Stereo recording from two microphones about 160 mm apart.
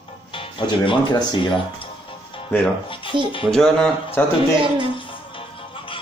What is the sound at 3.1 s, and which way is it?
Speech, 30° right (ahead or behind).